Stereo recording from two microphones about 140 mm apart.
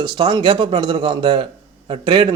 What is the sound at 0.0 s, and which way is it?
A man's voice, 30° right (ahead or behind).